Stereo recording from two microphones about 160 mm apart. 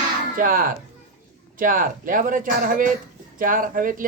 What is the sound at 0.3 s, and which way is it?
Speech, 60° right (ahead or behind).